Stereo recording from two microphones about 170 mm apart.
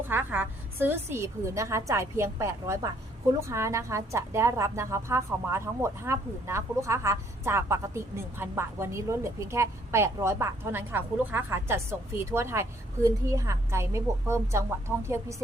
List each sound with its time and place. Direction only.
0.1 s a woman's voice: 10° right (ahead or behind)